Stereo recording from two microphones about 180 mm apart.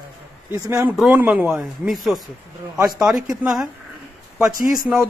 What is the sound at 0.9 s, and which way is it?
Speech, 5° right (ahead or behind).